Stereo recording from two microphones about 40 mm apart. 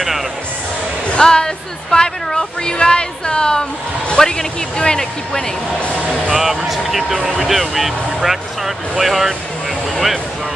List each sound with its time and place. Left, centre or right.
1.1 s speech: centre
5.8 s speech: left
6.3 s speech: centre
7.2 s speech: centre
7.4 s speech: centre